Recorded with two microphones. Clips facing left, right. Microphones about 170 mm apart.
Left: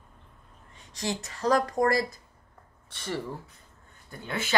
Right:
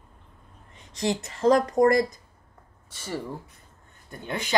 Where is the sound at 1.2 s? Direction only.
25° right (ahead or behind).